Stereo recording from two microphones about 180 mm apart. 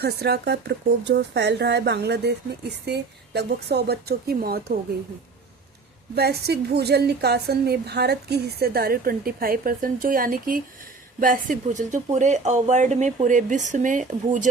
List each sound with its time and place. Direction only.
0.0 s a woman's voice: 65° right (ahead or behind)
6.1 s a woman's voice: 65° right (ahead or behind); by 14.5 s 45° right (ahead or behind)